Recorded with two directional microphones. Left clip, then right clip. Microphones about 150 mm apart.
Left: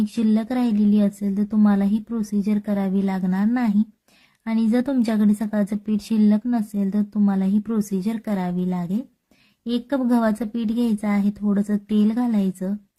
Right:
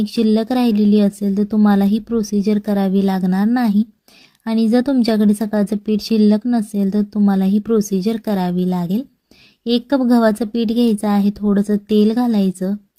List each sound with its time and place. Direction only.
0.0 s a woman's voice: 25° right (ahead or behind)